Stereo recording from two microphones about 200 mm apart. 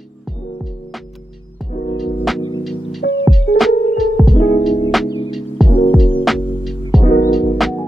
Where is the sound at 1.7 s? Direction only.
45° left (ahead or behind).